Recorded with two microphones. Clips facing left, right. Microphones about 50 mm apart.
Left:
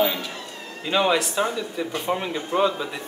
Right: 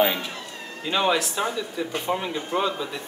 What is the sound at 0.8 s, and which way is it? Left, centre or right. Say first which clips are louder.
Speech: left 2 dB; centre.